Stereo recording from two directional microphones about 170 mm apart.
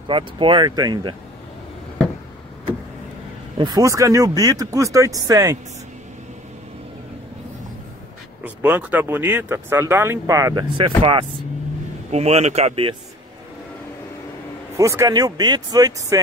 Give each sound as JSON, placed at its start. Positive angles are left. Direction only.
{"t": 0.1, "sound": "speech", "side_deg": -30}
{"t": 3.5, "sound": "speech", "side_deg": -25}
{"t": 8.5, "sound": "speech", "side_deg": -10}
{"t": 14.8, "sound": "speech", "side_deg": -20}